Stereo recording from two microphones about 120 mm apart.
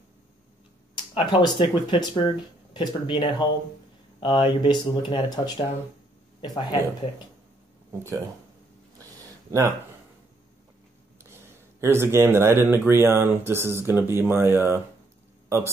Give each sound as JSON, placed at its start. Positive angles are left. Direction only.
{"t": 0.9, "sound": "speech", "side_deg": 40}
{"t": 7.9, "sound": "speech", "side_deg": -25}
{"t": 11.2, "sound": "speech", "side_deg": -20}